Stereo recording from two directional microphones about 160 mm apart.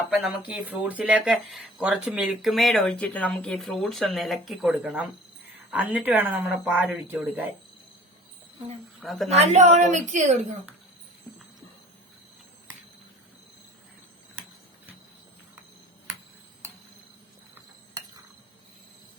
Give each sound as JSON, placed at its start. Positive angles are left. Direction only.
{"t": 0.4, "sound": "speech", "side_deg": -10}
{"t": 9.0, "sound": "a woman's voice", "side_deg": 0}
{"t": 9.3, "sound": "a woman's voice", "side_deg": -45}